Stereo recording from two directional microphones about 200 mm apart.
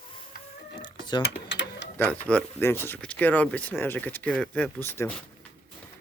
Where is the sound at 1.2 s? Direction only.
60° left (ahead or behind).